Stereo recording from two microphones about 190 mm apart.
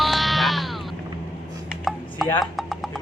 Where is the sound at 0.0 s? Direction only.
Centre (ahead or behind).